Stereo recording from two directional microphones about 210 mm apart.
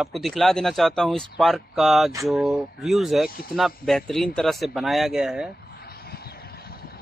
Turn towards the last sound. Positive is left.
turn(degrees=50)  # may be behind; listen again after turning